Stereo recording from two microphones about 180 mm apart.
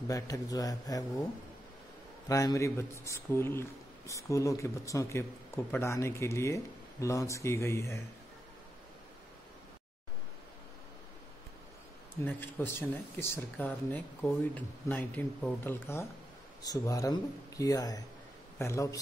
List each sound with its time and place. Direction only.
0.1 s speech: 20° left (ahead or behind)
2.2 s speech: 20° left (ahead or behind)
12.3 s speech: 10° left (ahead or behind)